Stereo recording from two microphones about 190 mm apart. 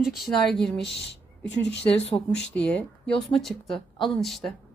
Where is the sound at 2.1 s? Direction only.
20° left (ahead or behind).